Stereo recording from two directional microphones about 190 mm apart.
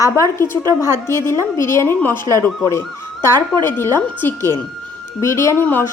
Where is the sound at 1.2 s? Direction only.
15° left (ahead or behind).